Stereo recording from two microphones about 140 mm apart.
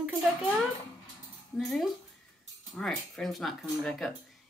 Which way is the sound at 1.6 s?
Centre (ahead or behind).